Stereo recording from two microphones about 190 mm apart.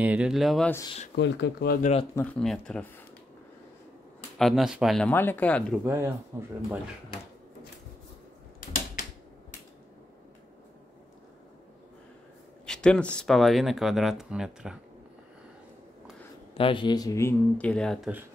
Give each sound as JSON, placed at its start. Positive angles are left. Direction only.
{"t": 0.0, "sound": "speech", "side_deg": -5}
{"t": 1.1, "sound": "speech", "side_deg": 70}
{"t": 1.8, "sound": "speech", "side_deg": 35}
{"t": 2.1, "sound": "speech", "side_deg": 5}
{"t": 4.4, "sound": "speech", "side_deg": 0}
{"t": 5.9, "sound": "speech", "side_deg": -10}
{"t": 12.6, "sound": "speech", "side_deg": 5}
{"t": 16.5, "sound": "speech", "side_deg": 25}